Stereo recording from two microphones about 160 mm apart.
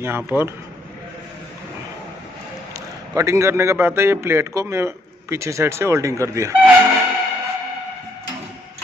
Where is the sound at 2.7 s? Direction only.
20° right (ahead or behind).